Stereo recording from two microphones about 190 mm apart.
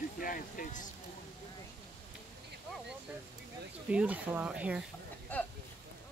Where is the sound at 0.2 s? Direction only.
45° left (ahead or behind).